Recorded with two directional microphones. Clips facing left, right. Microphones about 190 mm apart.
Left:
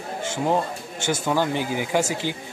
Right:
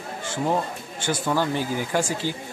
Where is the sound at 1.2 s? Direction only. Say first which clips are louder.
Left 1 dB; 15° left (ahead or behind).